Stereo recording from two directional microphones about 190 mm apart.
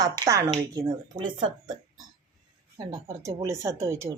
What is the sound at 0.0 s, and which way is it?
A woman's voice, 15° right (ahead or behind).